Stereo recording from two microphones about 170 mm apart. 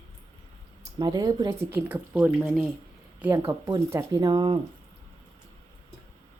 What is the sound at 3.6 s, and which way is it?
Speech, 20° right (ahead or behind).